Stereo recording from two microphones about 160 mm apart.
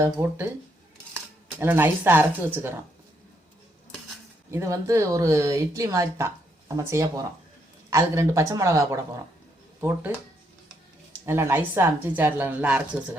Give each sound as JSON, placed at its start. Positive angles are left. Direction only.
{"t": 0.0, "sound": "a woman's voice", "side_deg": -15}
{"t": 4.5, "sound": "speech", "side_deg": -20}
{"t": 11.3, "sound": "a woman's voice", "side_deg": -15}